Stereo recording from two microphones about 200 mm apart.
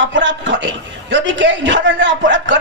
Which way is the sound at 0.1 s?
65° right (ahead or behind).